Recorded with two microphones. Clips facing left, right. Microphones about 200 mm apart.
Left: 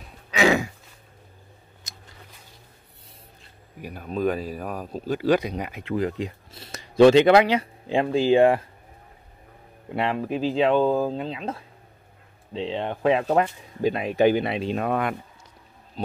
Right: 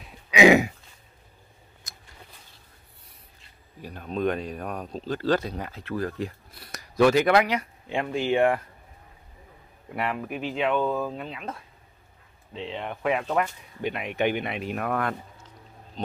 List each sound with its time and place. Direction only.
0.3 s throat clearing: 15° right (ahead or behind)
3.8 s speech: 5° left (ahead or behind); by 8.6 s 30° left (ahead or behind)
9.8 s speech: 25° left (ahead or behind)